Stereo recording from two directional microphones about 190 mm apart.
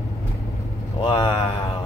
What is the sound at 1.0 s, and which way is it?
Speech, 30° left (ahead or behind).